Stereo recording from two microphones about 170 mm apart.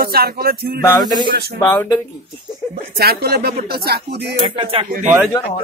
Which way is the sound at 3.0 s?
65° right (ahead or behind).